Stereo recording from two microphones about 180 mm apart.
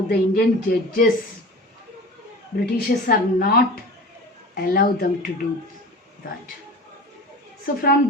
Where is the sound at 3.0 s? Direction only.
60° left (ahead or behind).